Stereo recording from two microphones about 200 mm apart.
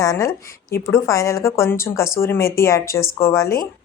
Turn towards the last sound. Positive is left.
turn(degrees=15)  # may be behind; listen again after turning